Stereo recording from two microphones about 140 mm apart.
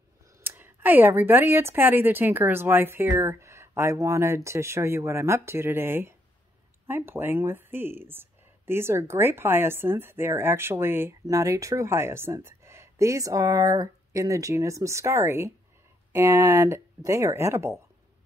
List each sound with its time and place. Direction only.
0.4 s speech: 15° right (ahead or behind)